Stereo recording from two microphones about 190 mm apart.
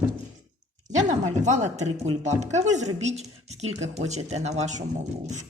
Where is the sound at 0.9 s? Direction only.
40° right (ahead or behind).